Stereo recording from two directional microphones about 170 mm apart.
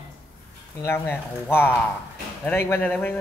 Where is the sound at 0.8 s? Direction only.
15° left (ahead or behind).